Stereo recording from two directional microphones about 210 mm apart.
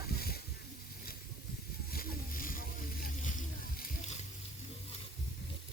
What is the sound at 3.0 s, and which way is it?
Boat, 35° left (ahead or behind).